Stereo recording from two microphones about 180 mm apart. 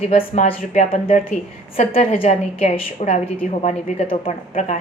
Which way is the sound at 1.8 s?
35° left (ahead or behind).